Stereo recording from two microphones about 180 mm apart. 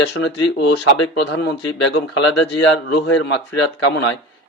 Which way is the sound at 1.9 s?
90° left.